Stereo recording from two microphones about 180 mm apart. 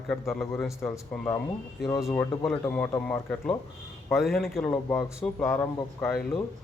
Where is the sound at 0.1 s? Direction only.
5° left (ahead or behind).